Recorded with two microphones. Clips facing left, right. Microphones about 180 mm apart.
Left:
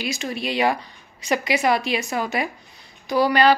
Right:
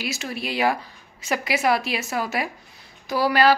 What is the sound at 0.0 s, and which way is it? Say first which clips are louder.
A woman's voice: left 3 dB; 5° right (ahead or behind).